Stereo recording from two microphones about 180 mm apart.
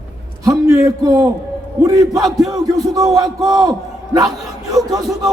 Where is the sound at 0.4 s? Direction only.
20° right (ahead or behind).